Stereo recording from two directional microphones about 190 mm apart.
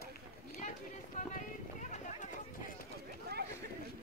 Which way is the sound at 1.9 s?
40° left (ahead or behind).